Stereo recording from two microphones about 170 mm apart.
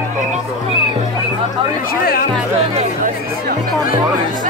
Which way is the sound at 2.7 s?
50° right (ahead or behind).